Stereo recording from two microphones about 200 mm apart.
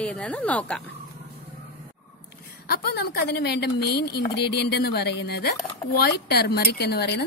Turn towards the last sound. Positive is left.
turn(degrees=55)  # may be behind; listen again after turning